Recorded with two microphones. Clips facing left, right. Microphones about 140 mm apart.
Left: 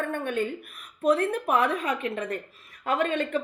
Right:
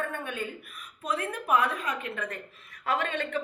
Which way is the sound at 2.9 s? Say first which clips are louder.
Left 4 dB; 45° left (ahead or behind).